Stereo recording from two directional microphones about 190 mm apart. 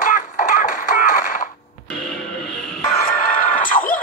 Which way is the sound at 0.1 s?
45° left (ahead or behind).